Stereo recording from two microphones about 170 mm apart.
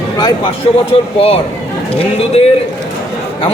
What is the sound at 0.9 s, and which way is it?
A man's voice, 35° left (ahead or behind).